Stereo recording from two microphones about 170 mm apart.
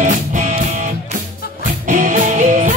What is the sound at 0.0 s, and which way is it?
Music, 45° right (ahead or behind).